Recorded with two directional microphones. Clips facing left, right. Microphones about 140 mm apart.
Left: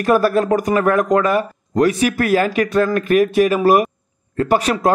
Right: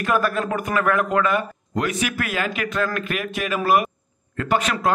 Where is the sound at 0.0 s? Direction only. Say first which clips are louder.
Left 7 dB; 35° left (ahead or behind).